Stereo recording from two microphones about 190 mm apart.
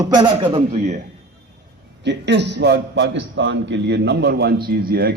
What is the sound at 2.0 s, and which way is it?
A man's voice, 65° right (ahead or behind).